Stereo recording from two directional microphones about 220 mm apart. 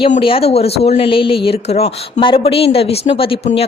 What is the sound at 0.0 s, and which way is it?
Speech, 25° left (ahead or behind).